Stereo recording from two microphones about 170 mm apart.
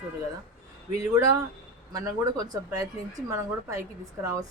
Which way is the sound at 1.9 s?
20° right (ahead or behind).